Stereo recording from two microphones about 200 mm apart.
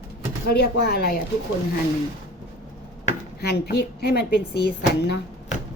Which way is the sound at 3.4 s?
50° left (ahead or behind).